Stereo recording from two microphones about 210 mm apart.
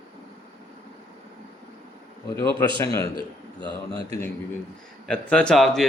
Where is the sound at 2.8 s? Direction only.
15° left (ahead or behind).